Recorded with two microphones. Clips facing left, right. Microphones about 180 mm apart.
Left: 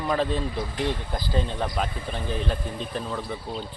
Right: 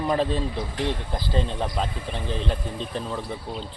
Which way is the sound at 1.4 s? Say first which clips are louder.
Right 1 dB; centre (ahead or behind).